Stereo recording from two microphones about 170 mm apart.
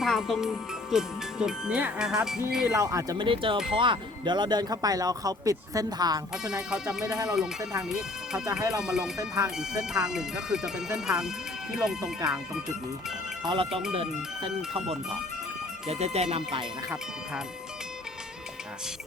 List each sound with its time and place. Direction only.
0.0 s speech: centre (ahead or behind)
2.7 s speech: 20° right (ahead or behind)
6.4 s speech: 5° right (ahead or behind)
8.4 s speech: 20° right (ahead or behind)
8.8 s speech: 5° right (ahead or behind)
9.1 s speech: 20° right (ahead or behind)
9.6 s speech: 5° right (ahead or behind)
13.4 s speech: 30° right (ahead or behind)